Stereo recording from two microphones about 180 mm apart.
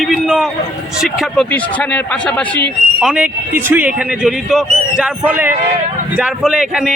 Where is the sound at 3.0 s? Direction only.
5° right (ahead or behind).